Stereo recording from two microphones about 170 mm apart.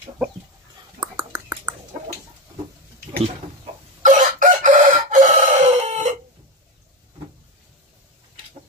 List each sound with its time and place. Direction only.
0.9 s whispering: 25° right (ahead or behind)
4.0 s chicken: 50° right (ahead or behind)